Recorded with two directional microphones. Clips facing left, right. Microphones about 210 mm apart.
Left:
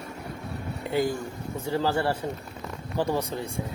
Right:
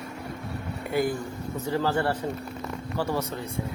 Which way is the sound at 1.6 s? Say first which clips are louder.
Even; 15° left (ahead or behind).